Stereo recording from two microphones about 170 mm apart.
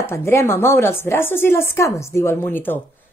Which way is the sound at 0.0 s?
15° left (ahead or behind).